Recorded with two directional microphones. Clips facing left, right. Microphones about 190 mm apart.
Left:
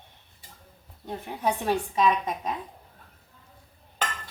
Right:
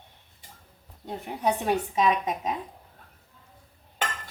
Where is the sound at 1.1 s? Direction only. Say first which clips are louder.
Right 1 dB; 15° right (ahead or behind).